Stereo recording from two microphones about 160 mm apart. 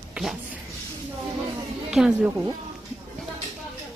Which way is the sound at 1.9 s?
5° right (ahead or behind).